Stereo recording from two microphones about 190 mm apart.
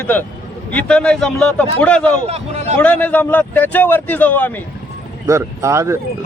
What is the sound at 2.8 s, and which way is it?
Speech, 10° left (ahead or behind).